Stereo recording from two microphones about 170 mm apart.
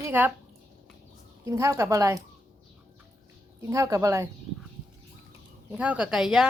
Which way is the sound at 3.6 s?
20° right (ahead or behind).